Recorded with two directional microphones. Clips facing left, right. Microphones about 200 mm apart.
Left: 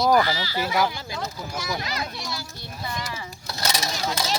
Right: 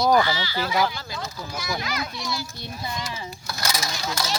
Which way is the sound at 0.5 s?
10° left (ahead or behind).